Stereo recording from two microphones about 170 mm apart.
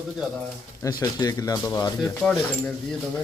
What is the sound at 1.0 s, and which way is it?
Speech, 20° left (ahead or behind).